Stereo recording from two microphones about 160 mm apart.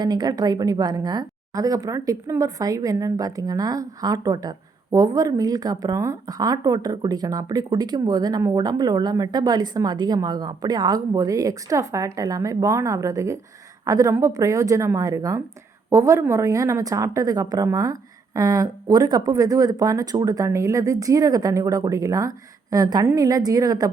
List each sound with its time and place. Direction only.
0.0 s a woman's voice: 25° right (ahead or behind)